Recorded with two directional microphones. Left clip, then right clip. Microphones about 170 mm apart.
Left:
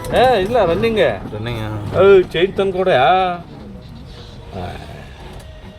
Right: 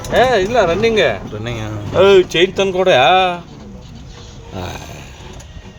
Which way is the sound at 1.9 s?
65° right (ahead or behind).